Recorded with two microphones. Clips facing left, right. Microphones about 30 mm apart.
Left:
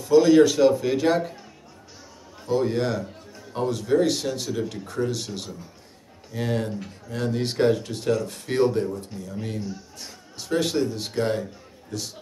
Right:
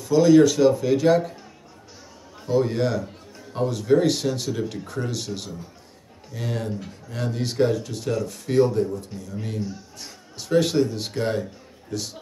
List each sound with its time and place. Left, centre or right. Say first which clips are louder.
0.1 s speech: even; centre
2.4 s a man's voice: right 1 dB; centre
9.1 s a man's voice: even; centre